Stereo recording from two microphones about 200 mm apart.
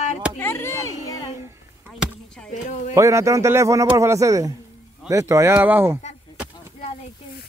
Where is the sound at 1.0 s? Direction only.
20° left (ahead or behind).